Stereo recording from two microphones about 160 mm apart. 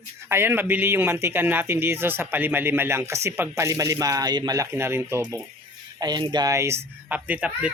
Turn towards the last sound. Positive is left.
turn(degrees=-5)  # may be behind; listen again after turning